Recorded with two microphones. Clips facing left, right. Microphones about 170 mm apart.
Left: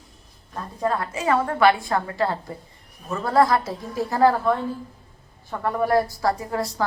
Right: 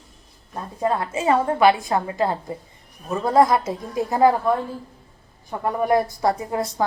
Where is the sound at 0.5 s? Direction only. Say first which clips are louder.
Right 2 dB; 20° right (ahead or behind).